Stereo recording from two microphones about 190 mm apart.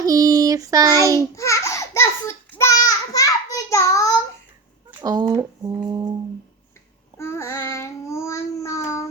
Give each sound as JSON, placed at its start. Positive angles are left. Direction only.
{"t": 0.0, "sound": "child singing", "side_deg": -20}
{"t": 1.4, "sound": "a sound", "side_deg": 15}
{"t": 4.9, "sound": "speech", "side_deg": -20}
{"t": 7.2, "sound": "child singing", "side_deg": 15}